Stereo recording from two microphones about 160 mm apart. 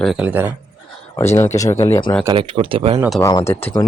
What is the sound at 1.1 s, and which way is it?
Speech, 15° left (ahead or behind).